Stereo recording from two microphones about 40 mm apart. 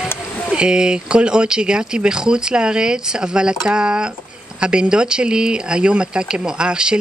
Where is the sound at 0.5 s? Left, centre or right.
Right.